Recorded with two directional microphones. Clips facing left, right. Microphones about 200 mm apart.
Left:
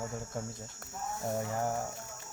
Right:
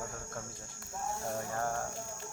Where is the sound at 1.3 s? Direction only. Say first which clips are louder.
Left 5 dB; 15° left (ahead or behind).